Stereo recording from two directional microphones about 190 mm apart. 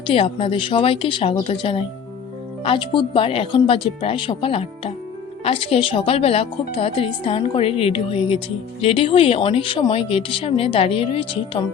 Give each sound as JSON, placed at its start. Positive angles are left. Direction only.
{"t": 0.1, "sound": "a woman's voice", "side_deg": 30}